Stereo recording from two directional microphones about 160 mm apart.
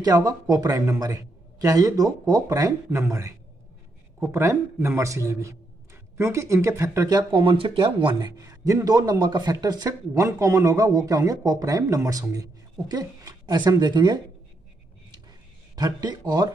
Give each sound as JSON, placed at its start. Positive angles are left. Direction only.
{"t": 0.0, "sound": "a man's voice", "side_deg": -20}
{"t": 15.7, "sound": "speech", "side_deg": -25}